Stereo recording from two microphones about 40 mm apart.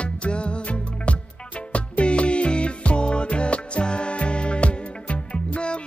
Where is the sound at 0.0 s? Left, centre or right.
Left.